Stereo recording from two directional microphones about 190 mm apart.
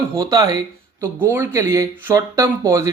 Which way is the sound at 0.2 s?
20° right (ahead or behind).